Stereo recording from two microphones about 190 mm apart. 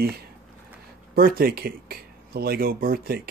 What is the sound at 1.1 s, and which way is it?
Speech, 50° right (ahead or behind).